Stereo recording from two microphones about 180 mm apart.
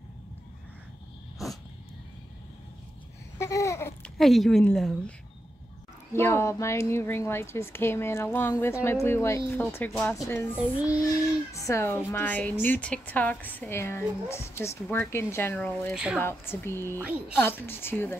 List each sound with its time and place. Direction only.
3.3 s babbling: 15° left (ahead or behind)
4.2 s a woman's voice: centre (ahead or behind)
6.1 s a woman's voice: 15° left (ahead or behind)
11.6 s a woman's voice: 15° left (ahead or behind)